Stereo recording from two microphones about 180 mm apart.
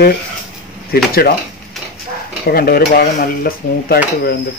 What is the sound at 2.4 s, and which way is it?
Speech, 60° left (ahead or behind).